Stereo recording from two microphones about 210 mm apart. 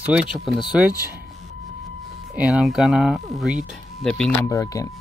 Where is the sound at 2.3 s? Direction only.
5° right (ahead or behind).